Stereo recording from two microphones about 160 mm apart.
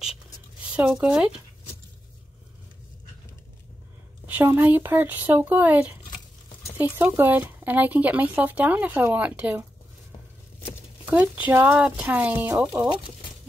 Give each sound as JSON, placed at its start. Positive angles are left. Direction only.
{"t": 0.7, "sound": "speech", "side_deg": -5}
{"t": 4.3, "sound": "speech", "side_deg": -10}
{"t": 11.1, "sound": "speech", "side_deg": -10}